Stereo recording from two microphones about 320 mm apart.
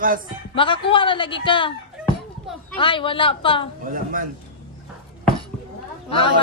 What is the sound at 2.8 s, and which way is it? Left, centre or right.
Speech, centre.